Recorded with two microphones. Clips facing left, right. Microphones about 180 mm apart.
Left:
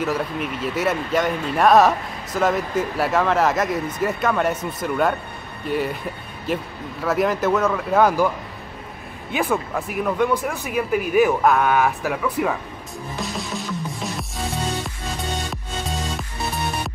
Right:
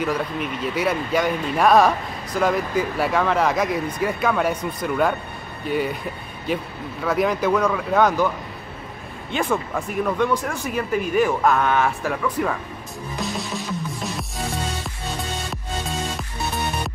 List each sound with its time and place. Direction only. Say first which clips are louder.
0.0 s speech: even; 5° left (ahead or behind)
9.3 s speech: left 1 dB; centre (ahead or behind)
13.2 s music: right 1 dB; centre (ahead or behind)